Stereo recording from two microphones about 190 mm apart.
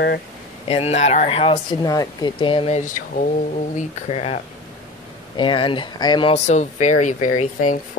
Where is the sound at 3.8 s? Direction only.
35° left (ahead or behind).